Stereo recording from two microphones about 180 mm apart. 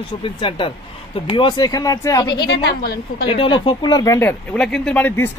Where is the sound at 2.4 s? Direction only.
65° left (ahead or behind).